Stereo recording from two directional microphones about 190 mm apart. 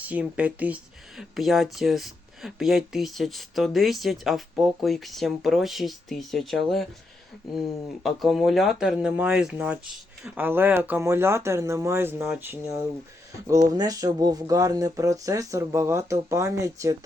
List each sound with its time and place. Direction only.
0.0 s speech: 5° right (ahead or behind)